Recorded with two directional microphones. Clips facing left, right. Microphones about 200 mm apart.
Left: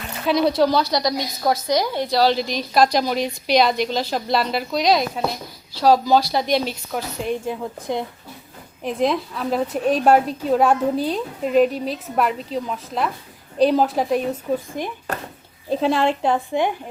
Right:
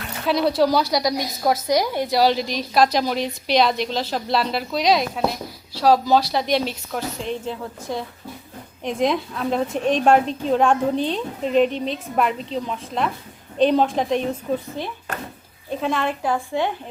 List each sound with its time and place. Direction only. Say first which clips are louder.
0.3 s a woman's voice: left 1 dB; centre (ahead or behind)
2.4 s a woman's voice: left 1 dB; centre (ahead or behind); by 8.0 s 15° left (ahead or behind)
8.8 s a woman's voice: even; centre (ahead or behind)
15.7 s speech: left 4 dB; 30° left (ahead or behind); by 16.7 s 15° left (ahead or behind)